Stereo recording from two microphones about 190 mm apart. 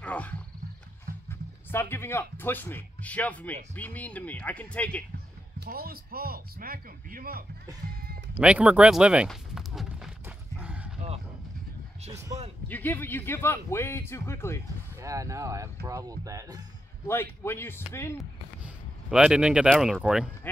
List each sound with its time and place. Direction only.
0.0 s wild animals: 5° left (ahead or behind)
1.7 s a man's voice: 10° left (ahead or behind)
5.7 s speech: 50° right (ahead or behind)
7.8 s music: 50° right (ahead or behind)
8.4 s speech: 5° right (ahead or behind)
10.2 s horse: 5° right (ahead or behind)
12.6 s a man's voice: 10° left (ahead or behind)
15.0 s speech: 15° right (ahead or behind)
17.1 s a man's voice: 10° left (ahead or behind)
18.6 s speech: 5° right (ahead or behind)